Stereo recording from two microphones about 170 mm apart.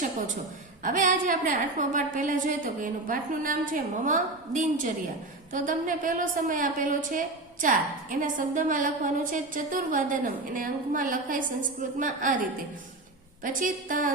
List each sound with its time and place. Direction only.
0.8 s a woman's voice: 50° right (ahead or behind)